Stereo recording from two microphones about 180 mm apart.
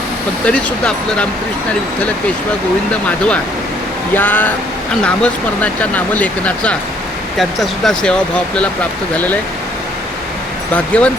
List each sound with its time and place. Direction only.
0.4 s speech: 5° left (ahead or behind)
2.9 s speech: 5° left (ahead or behind)
10.8 s speech: 5° left (ahead or behind)